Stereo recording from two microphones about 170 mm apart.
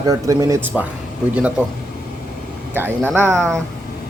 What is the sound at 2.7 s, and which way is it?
Speech, 10° right (ahead or behind).